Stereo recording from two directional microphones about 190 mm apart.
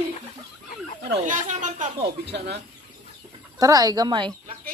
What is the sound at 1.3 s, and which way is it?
Speech, 40° right (ahead or behind).